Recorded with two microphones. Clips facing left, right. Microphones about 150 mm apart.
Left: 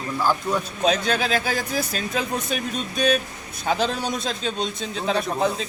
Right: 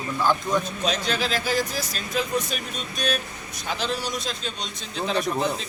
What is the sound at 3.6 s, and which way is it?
Speech, 45° left (ahead or behind).